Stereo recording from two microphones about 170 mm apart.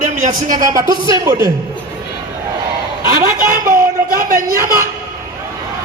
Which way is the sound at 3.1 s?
55° right (ahead or behind).